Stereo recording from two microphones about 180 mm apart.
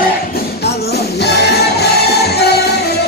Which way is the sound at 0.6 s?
65° left (ahead or behind).